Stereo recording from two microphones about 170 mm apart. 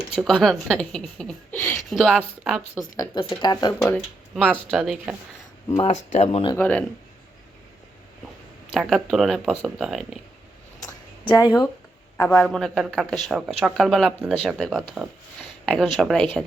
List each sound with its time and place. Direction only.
0.2 s speech: centre (ahead or behind)
3.2 s speech: 25° left (ahead or behind)
4.7 s speech: 5° right (ahead or behind)
5.8 s speech: 45° left (ahead or behind)
6.6 s speech: 10° left (ahead or behind)
8.7 s speech: centre (ahead or behind)
10.8 s a sound: 25° left (ahead or behind)
12.1 s a man's voice: 10° left (ahead or behind)
12.5 s speech: centre (ahead or behind)